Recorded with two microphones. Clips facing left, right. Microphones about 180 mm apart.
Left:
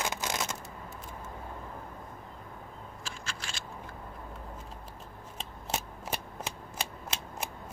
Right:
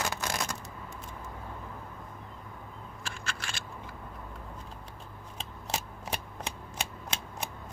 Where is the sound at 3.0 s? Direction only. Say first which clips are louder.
Right 3 dB; 60° right (ahead or behind).